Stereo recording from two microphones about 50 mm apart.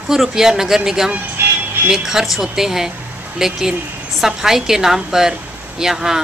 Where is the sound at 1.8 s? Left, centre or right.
Centre.